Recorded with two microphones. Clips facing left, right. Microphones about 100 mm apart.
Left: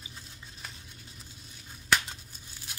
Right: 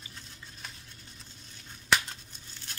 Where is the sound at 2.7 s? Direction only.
10° left (ahead or behind).